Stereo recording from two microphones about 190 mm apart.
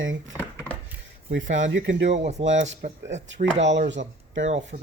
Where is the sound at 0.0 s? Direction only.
90° right.